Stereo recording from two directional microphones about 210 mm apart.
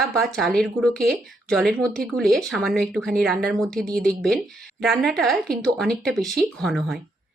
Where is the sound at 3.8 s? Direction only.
40° right (ahead or behind).